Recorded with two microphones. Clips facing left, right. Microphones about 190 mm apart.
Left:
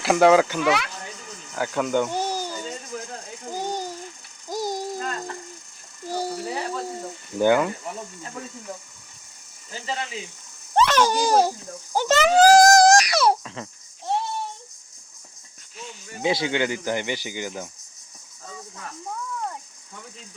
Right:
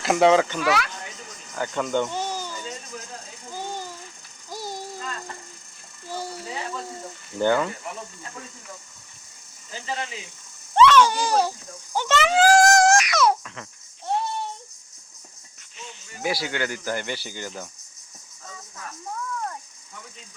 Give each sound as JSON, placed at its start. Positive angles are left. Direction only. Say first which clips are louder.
{"t": 0.0, "sound": "speech", "louder": "left 2 dB", "side_deg": 5}
{"t": 0.6, "sound": "speech", "louder": "left 1 dB", "side_deg": 20}
{"t": 1.5, "sound": "speech", "louder": "left 2 dB", "side_deg": 5}
{"t": 2.1, "sound": "a sound", "louder": "left 3 dB", "side_deg": 40}
{"t": 7.3, "sound": "speech", "louder": "left 3 dB", "side_deg": 10}
{"t": 10.8, "sound": "a child's voice", "louder": "right 2 dB", "side_deg": 40}
{"t": 16.2, "sound": "speech", "louder": "left 4 dB", "side_deg": 20}